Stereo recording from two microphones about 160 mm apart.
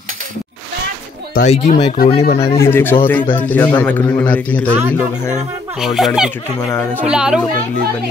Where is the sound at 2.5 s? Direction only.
15° left (ahead or behind).